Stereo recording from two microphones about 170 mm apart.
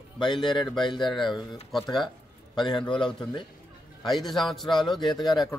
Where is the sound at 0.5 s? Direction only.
25° left (ahead or behind).